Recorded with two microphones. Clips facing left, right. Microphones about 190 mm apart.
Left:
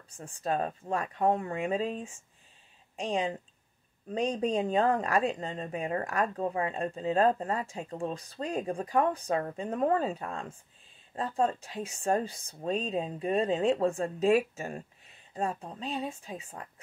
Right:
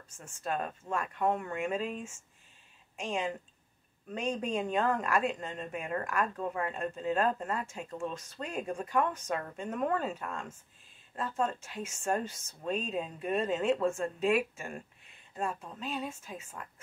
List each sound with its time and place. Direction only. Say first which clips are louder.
0.1 s speech: left 4 dB; 35° left (ahead or behind)